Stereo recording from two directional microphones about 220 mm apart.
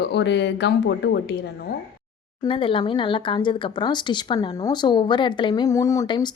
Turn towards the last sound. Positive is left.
turn(degrees=15)  # may be behind; listen again after turning